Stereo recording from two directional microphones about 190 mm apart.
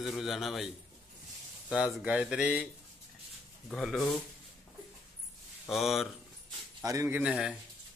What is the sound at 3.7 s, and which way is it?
Speech, centre (ahead or behind).